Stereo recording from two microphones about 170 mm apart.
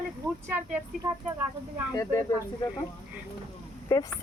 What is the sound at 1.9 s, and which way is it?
Speech, 20° left (ahead or behind).